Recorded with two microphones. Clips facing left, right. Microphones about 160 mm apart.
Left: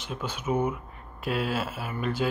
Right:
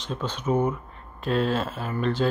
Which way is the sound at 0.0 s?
10° left (ahead or behind).